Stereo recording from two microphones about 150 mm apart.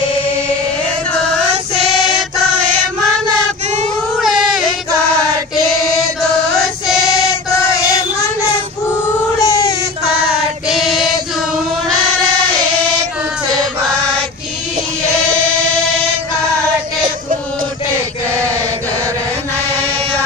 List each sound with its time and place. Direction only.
4.2 s child singing: centre (ahead or behind)
9.4 s a sound: 25° left (ahead or behind)
10.7 s choir: centre (ahead or behind)